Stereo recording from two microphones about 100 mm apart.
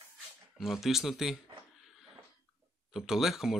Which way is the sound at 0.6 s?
Centre (ahead or behind).